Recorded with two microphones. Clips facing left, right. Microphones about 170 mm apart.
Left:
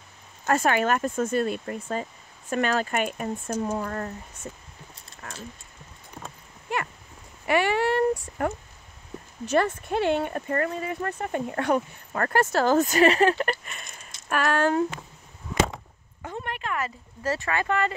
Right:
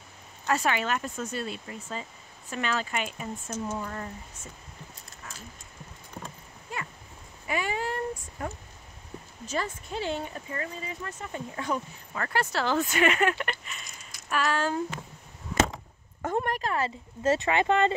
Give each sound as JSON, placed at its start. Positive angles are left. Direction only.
{"t": 0.5, "sound": "speech", "side_deg": 50}
{"t": 5.2, "sound": "dog", "side_deg": 55}
{"t": 6.7, "sound": "a sound", "side_deg": 70}
{"t": 7.4, "sound": "speech", "side_deg": 70}
{"t": 9.5, "sound": "speech", "side_deg": 60}
{"t": 16.2, "sound": "speech", "side_deg": -50}